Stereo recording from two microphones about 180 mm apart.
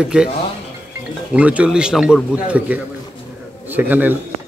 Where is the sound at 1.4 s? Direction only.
5° right (ahead or behind).